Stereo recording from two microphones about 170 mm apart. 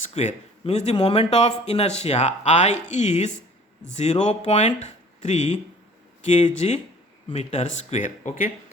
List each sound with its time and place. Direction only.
0.0 s a man's voice: 45° left (ahead or behind)